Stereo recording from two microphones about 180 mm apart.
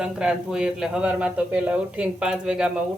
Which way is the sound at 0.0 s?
5° right (ahead or behind).